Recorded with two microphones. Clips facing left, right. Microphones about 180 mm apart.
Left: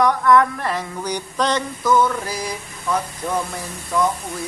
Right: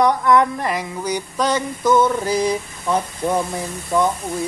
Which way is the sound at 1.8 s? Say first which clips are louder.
Right 2 dB; 25° right (ahead or behind).